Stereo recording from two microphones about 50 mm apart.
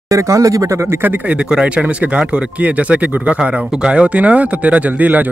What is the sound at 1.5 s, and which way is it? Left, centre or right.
Speech, centre.